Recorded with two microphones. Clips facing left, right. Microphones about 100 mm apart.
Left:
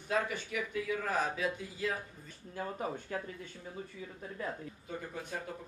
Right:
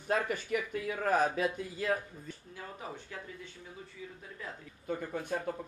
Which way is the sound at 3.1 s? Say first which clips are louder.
Left 6 dB; 40° left (ahead or behind).